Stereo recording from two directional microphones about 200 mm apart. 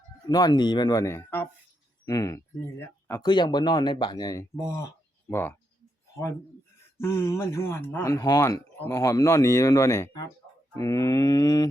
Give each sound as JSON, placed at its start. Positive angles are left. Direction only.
{"t": 0.3, "sound": "speech", "side_deg": 20}
{"t": 6.9, "sound": "speech", "side_deg": 10}